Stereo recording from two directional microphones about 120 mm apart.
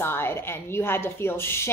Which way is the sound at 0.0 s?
20° left (ahead or behind).